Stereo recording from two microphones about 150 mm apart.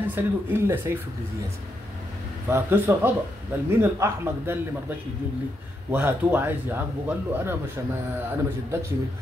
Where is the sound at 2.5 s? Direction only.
20° right (ahead or behind).